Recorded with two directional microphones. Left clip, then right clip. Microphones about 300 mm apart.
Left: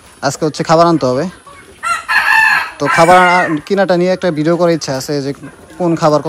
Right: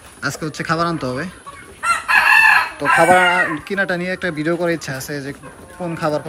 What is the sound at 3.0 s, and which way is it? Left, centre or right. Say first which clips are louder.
Speech: left 6 dB; right.